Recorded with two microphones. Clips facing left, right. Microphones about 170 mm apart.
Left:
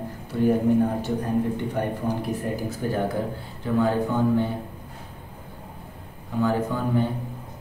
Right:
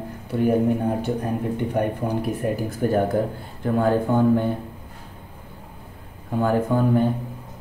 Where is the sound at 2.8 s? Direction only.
55° right (ahead or behind).